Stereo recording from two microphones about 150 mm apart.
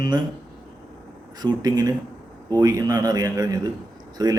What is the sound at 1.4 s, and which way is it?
Speech, 25° right (ahead or behind).